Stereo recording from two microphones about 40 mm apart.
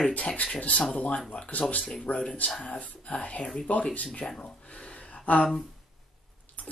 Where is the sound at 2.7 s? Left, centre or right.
Left.